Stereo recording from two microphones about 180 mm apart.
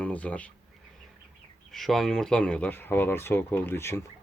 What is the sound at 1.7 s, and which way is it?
Speech, centre (ahead or behind).